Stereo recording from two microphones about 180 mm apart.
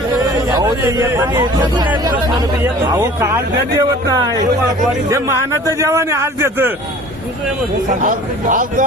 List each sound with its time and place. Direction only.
0.4 s a man's voice: 20° right (ahead or behind)
7.9 s a man's voice: 45° right (ahead or behind)